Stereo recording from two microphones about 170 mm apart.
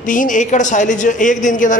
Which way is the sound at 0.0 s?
50° left (ahead or behind).